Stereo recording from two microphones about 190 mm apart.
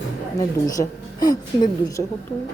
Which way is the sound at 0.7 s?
20° left (ahead or behind).